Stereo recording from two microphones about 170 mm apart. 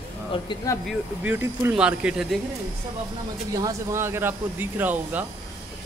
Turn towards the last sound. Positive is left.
turn(degrees=-10)  # may be behind; listen again after turning